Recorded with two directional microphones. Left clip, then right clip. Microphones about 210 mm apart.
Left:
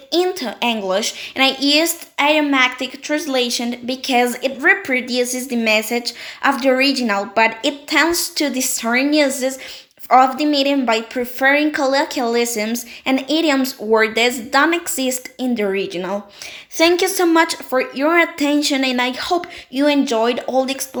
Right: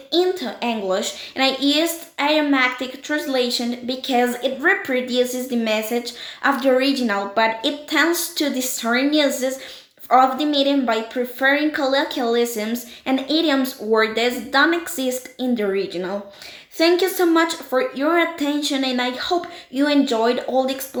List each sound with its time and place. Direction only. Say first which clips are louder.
0.1 s a woman's voice: left 1 dB; 30° left (ahead or behind)